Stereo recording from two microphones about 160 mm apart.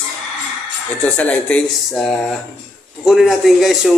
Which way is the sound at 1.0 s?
10° left (ahead or behind).